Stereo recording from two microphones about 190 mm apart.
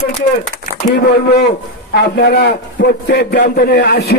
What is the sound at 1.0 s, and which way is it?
A man's voice, 60° left (ahead or behind).